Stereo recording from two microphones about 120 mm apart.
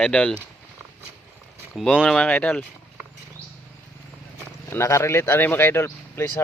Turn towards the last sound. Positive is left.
turn(degrees=20)  # may be behind; listen again after turning